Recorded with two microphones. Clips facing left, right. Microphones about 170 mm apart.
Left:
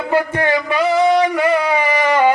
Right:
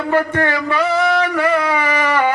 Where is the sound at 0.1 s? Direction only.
15° left (ahead or behind).